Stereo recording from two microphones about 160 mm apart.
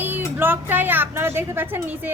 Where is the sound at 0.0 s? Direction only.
15° right (ahead or behind).